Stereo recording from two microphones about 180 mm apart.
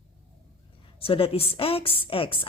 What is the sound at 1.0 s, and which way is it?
A woman's voice, 30° left (ahead or behind).